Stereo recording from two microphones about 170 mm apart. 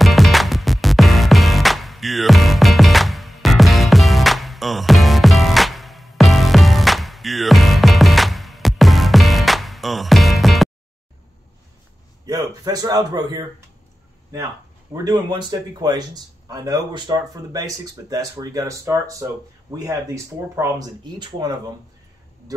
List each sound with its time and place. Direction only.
0.0 s music: centre (ahead or behind)
12.3 s speech: 20° right (ahead or behind)
14.9 s speech: 25° right (ahead or behind)